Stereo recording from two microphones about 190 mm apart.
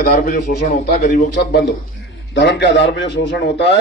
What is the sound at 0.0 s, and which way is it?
A man's voice, 50° left (ahead or behind).